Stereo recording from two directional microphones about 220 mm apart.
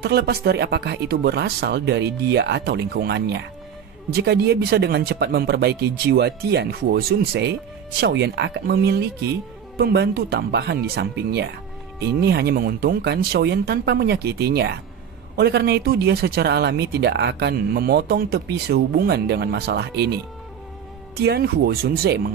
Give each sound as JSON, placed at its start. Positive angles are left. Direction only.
{"t": 0.0, "sound": "speech", "side_deg": -45}
{"t": 21.2, "sound": "speech", "side_deg": -50}